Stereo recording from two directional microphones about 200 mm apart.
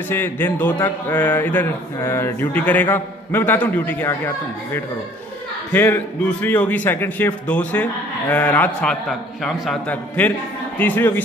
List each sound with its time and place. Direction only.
0.1 s speech: 10° left (ahead or behind)
5.7 s speech: 10° left (ahead or behind)